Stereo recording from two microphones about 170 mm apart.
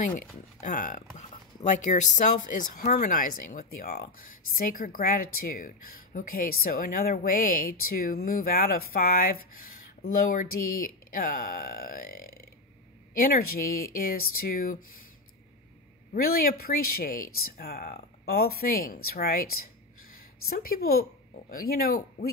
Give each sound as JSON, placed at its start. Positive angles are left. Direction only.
{"t": 0.6, "sound": "a woman's voice", "side_deg": 50}
{"t": 16.1, "sound": "a woman's voice", "side_deg": 60}